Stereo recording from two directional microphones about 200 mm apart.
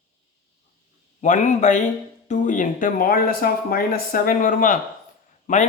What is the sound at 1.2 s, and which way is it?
Speech, 40° left (ahead or behind).